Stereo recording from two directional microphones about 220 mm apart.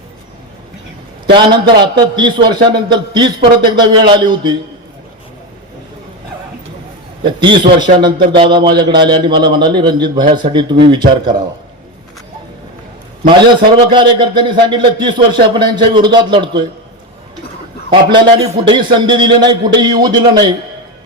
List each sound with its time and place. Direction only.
1.3 s a man's voice: 20° right (ahead or behind)
7.3 s a man's voice: 20° right (ahead or behind)
13.2 s a man's voice: 20° right (ahead or behind)
17.9 s a man's voice: 25° right (ahead or behind)